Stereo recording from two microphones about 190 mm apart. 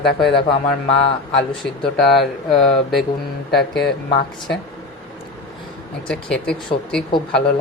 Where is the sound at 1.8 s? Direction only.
5° left (ahead or behind).